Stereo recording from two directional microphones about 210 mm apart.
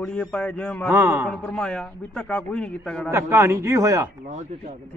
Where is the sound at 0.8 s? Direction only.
10° right (ahead or behind).